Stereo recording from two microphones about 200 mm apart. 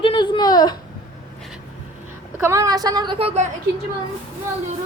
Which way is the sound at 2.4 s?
15° right (ahead or behind).